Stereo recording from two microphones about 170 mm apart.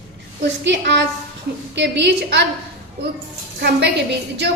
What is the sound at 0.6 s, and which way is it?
A woman's voice, 90° right.